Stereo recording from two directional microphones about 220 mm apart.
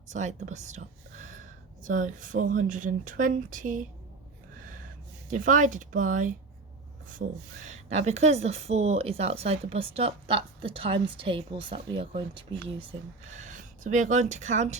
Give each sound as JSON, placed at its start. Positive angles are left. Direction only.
{"t": 0.1, "sound": "speech", "side_deg": -35}
{"t": 5.3, "sound": "a woman's voice", "side_deg": -35}